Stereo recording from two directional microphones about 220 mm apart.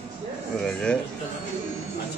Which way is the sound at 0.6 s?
Centre (ahead or behind).